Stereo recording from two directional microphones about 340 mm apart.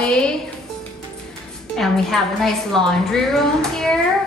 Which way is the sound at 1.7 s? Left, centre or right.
Centre.